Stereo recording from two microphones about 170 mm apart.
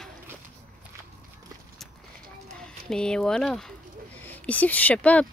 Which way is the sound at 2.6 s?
5° left (ahead or behind).